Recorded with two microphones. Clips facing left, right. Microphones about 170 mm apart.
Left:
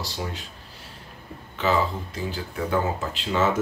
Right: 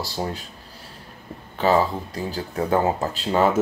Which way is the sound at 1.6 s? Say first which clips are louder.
Right 4 dB; 40° right (ahead or behind).